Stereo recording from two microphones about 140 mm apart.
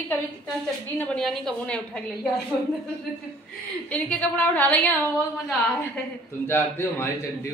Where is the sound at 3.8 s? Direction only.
10° left (ahead or behind).